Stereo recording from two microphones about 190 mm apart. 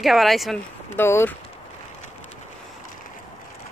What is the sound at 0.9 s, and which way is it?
Speech, 10° left (ahead or behind).